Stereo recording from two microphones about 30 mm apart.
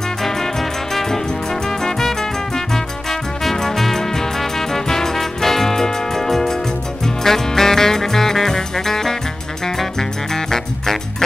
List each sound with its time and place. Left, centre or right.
0.2 s music: centre